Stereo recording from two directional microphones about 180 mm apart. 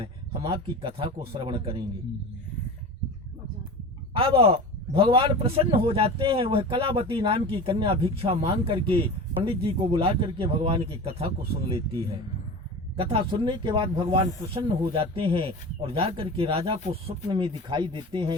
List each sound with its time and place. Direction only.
0.0 s a man's voice: 30° right (ahead or behind)
4.1 s a man's voice: 30° right (ahead or behind)
13.0 s a man's voice: 30° right (ahead or behind)